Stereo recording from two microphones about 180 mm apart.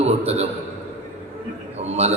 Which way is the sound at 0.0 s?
35° right (ahead or behind).